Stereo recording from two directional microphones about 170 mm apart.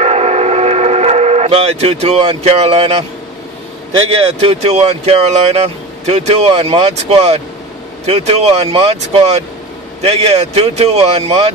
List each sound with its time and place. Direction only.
0.0 s vehicle: 40° right (ahead or behind)
4.2 s speech: 35° right (ahead or behind)